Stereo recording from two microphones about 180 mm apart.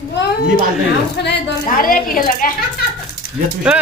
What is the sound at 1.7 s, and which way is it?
Speech, 50° left (ahead or behind).